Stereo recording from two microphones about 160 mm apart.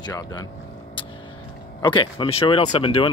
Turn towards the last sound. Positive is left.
turn(degrees=35)  # may be behind; listen again after turning